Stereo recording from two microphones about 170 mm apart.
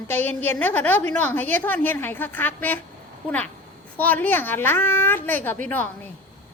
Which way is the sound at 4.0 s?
10° left (ahead or behind).